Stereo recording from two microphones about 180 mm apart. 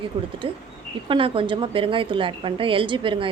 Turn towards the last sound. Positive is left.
turn(degrees=-30)  # may be behind; listen again after turning